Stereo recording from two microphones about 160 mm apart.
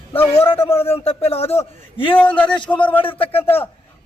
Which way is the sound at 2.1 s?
10° left (ahead or behind).